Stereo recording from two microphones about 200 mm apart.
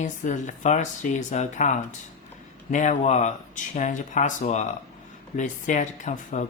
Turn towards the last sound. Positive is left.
turn(degrees=35)  # may be behind; listen again after turning